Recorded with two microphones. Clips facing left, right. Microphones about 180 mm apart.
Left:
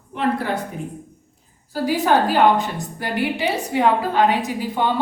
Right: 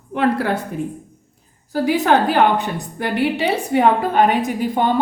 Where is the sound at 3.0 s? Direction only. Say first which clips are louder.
Right 3 dB; 65° right (ahead or behind).